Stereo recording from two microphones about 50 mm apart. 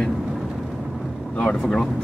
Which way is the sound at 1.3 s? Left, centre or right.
Left.